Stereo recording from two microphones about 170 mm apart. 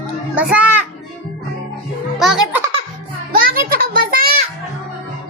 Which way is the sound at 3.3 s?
60° right (ahead or behind).